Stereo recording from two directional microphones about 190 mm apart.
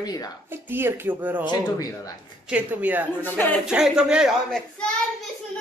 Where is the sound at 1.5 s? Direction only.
20° left (ahead or behind).